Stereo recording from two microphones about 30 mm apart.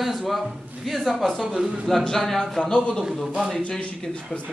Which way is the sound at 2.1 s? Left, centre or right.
Centre.